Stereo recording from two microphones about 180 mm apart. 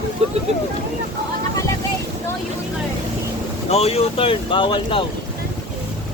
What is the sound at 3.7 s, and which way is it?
Speech, 35° left (ahead or behind).